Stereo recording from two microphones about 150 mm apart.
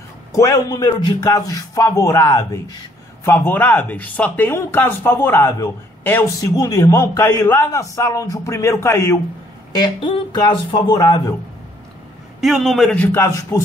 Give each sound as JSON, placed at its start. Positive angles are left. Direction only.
{"t": 0.3, "sound": "a man's voice", "side_deg": 20}
{"t": 9.8, "sound": "a man's voice", "side_deg": 35}
{"t": 12.4, "sound": "a man's voice", "side_deg": 0}
{"t": 12.9, "sound": "speech", "side_deg": 15}